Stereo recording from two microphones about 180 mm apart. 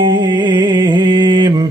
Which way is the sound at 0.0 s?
25° right (ahead or behind).